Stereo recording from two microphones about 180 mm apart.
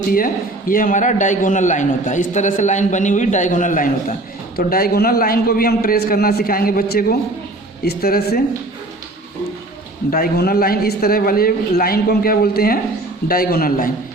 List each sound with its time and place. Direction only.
0.7 s a man's voice: 50° left (ahead or behind)
4.5 s a man's voice: 55° left (ahead or behind)
10.1 s a man's voice: 60° left (ahead or behind)